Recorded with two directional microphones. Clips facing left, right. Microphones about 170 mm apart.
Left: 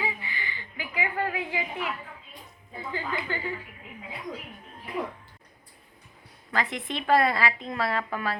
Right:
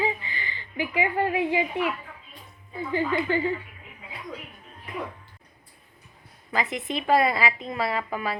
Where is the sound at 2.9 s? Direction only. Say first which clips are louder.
Right 8 dB; 25° right (ahead or behind).